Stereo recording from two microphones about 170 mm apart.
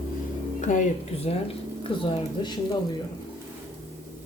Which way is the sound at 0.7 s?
45° left (ahead or behind).